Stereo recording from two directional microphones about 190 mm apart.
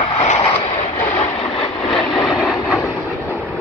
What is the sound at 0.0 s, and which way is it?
Vehicle, 35° left (ahead or behind).